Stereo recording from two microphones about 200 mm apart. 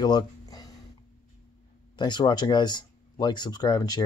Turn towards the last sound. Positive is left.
turn(degrees=20)  # may be behind; listen again after turning